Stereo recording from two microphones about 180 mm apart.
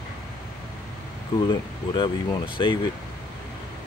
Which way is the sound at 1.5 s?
25° left (ahead or behind).